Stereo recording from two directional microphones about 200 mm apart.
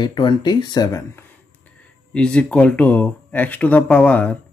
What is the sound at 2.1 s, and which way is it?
Speech, 5° left (ahead or behind).